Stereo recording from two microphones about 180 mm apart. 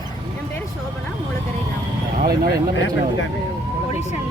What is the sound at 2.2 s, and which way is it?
Speech, 55° right (ahead or behind).